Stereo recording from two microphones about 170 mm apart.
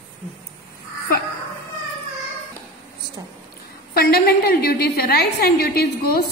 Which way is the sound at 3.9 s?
65° left (ahead or behind).